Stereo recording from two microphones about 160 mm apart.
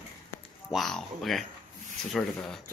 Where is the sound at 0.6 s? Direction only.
Centre (ahead or behind).